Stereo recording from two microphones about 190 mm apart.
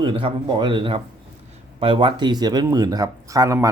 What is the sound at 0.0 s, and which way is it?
Speech, 25° right (ahead or behind).